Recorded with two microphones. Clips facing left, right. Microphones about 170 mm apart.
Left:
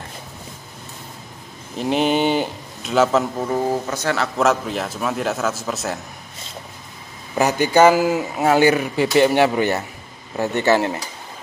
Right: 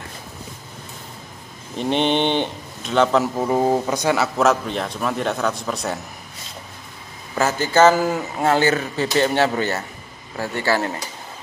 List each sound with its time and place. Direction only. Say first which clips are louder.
1.8 s a man's voice: left 1 dB; 5° left (ahead or behind)
3.3 s speech: right 3 dB; 20° right (ahead or behind)
4.4 s a man's voice: even; centre (ahead or behind)
7.3 s speech: left 2 dB; 15° left (ahead or behind)